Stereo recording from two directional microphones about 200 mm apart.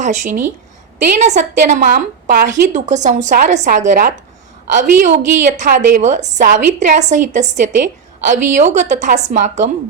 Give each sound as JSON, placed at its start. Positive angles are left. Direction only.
{"t": 0.0, "sound": "a woman's voice", "side_deg": -40}